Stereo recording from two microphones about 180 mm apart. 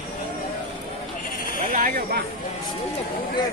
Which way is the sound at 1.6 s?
50° right (ahead or behind).